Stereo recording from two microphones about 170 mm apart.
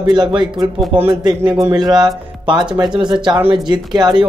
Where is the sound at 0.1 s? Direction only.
25° right (ahead or behind).